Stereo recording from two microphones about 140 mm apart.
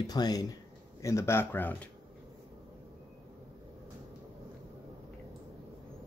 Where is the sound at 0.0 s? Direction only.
30° left (ahead or behind); by 1.9 s 15° left (ahead or behind).